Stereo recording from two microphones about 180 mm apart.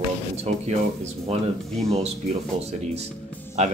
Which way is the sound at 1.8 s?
Centre (ahead or behind).